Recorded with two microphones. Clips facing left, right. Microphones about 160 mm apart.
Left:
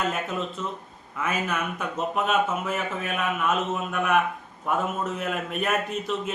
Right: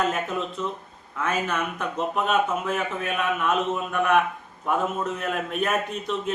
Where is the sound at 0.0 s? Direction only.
Centre (ahead or behind).